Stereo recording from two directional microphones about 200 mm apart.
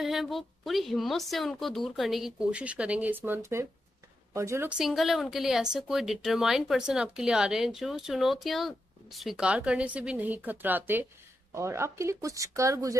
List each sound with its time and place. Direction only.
0.0 s a woman's voice: centre (ahead or behind)